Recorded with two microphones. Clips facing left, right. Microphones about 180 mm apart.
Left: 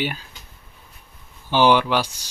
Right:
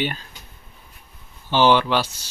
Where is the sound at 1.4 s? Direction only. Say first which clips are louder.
Even; 10° left (ahead or behind).